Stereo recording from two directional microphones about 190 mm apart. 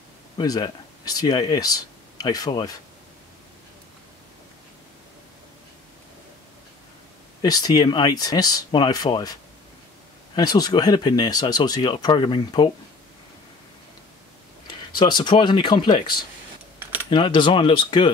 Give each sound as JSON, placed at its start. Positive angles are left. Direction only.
{"t": 0.4, "sound": "speech", "side_deg": 20}
{"t": 7.4, "sound": "speech", "side_deg": 20}
{"t": 14.7, "sound": "speech", "side_deg": 25}